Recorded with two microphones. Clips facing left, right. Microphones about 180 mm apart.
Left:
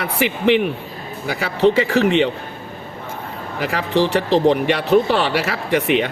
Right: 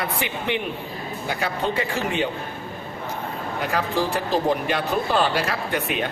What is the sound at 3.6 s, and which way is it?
Speech, 75° left (ahead or behind).